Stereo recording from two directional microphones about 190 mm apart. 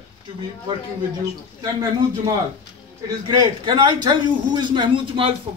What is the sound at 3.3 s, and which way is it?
A man's voice, 20° right (ahead or behind).